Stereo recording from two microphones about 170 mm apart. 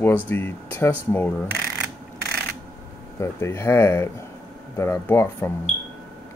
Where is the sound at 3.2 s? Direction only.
15° left (ahead or behind).